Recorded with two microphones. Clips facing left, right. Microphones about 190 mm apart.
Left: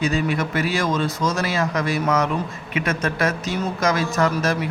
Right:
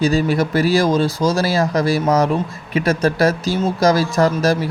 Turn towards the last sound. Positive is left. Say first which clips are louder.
# right 5 dB
turn(degrees=-35)  # may be behind; listen again after turning